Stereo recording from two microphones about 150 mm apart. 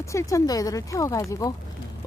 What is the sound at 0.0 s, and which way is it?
Speech, 20° left (ahead or behind).